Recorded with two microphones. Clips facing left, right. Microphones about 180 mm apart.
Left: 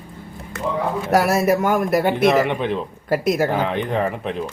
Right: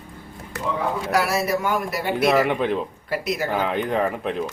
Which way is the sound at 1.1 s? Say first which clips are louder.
Left 6 dB; 50° left (ahead or behind).